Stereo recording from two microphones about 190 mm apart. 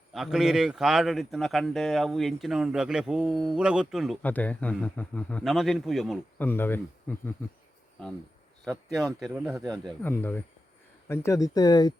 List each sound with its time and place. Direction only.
0.1 s a man's voice: centre (ahead or behind)
6.5 s speech: 10° left (ahead or behind)
9.2 s a man's voice: centre (ahead or behind); by 11.9 s 20° left (ahead or behind)